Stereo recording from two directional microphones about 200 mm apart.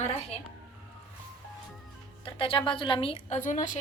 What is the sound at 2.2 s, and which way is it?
A woman's voice, 25° left (ahead or behind).